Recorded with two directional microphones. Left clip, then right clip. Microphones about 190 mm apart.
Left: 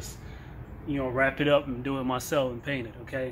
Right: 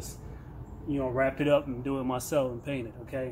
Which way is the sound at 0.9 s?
5° left (ahead or behind).